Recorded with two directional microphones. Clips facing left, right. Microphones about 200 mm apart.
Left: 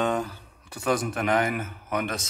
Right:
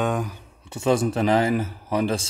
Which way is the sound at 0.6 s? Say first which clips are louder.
Right 5 dB; 25° right (ahead or behind).